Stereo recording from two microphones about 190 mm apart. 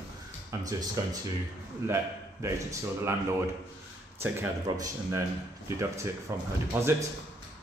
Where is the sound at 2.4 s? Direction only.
15° right (ahead or behind).